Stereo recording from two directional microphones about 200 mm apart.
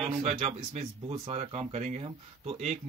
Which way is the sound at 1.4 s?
30° right (ahead or behind).